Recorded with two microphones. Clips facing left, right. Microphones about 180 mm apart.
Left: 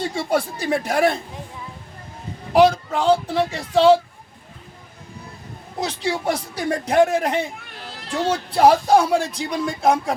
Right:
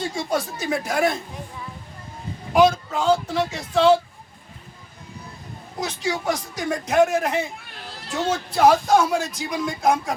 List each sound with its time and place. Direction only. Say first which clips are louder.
0.1 s speech: left 3 dB; 30° left (ahead or behind)
2.5 s speech: left 2 dB; 30° left (ahead or behind)
5.8 s speech: left 2 dB; 30° left (ahead or behind)